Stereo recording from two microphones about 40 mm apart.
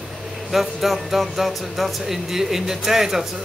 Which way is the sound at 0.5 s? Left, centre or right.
Centre.